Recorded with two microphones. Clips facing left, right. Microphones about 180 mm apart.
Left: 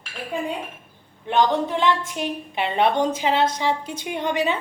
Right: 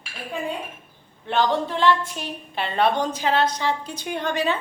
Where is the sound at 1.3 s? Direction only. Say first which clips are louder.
Left 2 dB; 15° left (ahead or behind).